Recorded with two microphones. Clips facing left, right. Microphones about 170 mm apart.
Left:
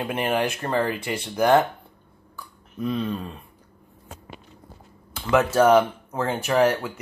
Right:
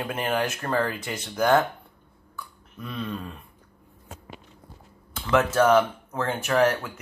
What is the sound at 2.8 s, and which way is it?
Speech, 30° left (ahead or behind).